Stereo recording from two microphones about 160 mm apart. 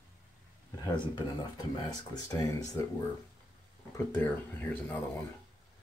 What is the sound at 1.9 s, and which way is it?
Speech, 20° left (ahead or behind).